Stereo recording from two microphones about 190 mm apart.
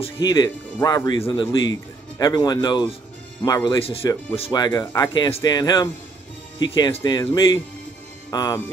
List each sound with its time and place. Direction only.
0.0 s speech: 20° left (ahead or behind)